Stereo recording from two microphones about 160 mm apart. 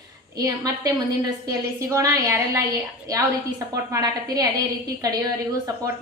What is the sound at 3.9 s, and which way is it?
Speech, 25° right (ahead or behind).